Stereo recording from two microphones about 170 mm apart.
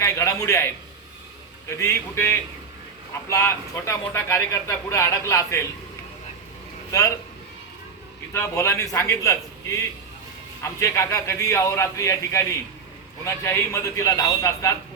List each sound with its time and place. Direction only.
0.0 s speech: 20° left (ahead or behind)
1.8 s speech: 15° left (ahead or behind)
8.3 s a man's voice: 15° left (ahead or behind)